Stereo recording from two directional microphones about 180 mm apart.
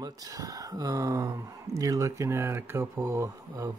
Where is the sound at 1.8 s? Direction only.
20° right (ahead or behind).